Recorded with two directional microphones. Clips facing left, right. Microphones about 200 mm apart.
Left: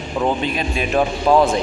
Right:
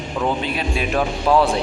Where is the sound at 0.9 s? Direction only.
15° left (ahead or behind).